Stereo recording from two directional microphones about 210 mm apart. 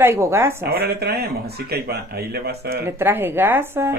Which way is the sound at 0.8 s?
50° right (ahead or behind).